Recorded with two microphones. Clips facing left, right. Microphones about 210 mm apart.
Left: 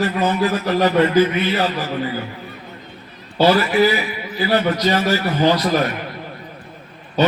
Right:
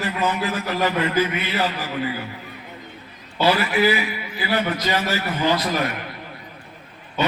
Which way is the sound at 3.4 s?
40° left (ahead or behind).